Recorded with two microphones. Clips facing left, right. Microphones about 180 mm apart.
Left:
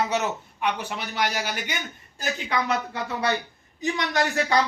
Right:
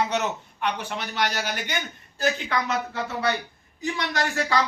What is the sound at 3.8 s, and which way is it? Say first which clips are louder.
Speech: left 2 dB; 20° left (ahead or behind).